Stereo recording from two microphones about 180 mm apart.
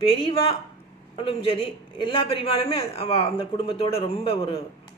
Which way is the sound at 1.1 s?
30° left (ahead or behind).